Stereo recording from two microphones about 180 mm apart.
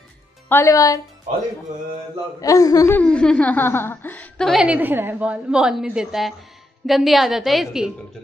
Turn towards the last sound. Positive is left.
turn(degrees=0)  # may be behind; listen again after turning